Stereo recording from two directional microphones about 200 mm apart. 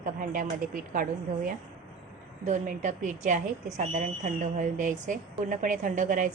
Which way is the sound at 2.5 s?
40° right (ahead or behind).